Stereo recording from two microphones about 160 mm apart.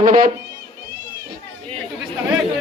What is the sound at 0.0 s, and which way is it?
Speech, 60° right (ahead or behind).